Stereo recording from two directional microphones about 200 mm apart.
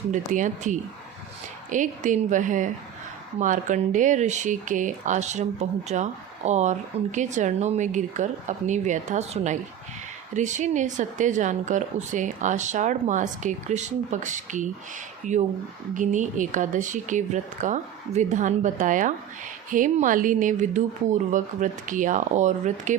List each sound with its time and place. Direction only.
0.1 s a woman's voice: 40° right (ahead or behind)